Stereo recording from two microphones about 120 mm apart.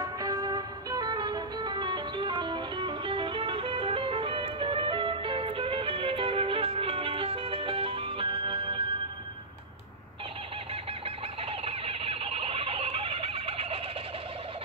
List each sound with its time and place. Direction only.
0.0 s music: 30° right (ahead or behind)
10.7 s fowl: 50° right (ahead or behind)